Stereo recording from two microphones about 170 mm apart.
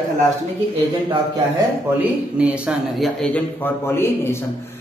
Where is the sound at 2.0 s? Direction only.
10° right (ahead or behind); by 4.4 s 15° left (ahead or behind).